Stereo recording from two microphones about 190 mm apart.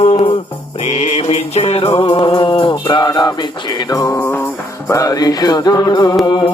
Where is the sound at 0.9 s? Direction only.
35° left (ahead or behind); by 4.4 s 10° left (ahead or behind).